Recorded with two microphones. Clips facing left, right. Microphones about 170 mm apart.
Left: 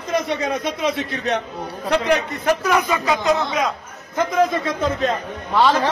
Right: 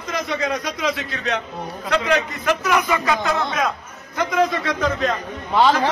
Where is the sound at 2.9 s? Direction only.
20° left (ahead or behind).